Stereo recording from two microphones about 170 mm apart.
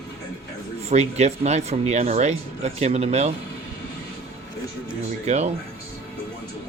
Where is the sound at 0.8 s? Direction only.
40° right (ahead or behind).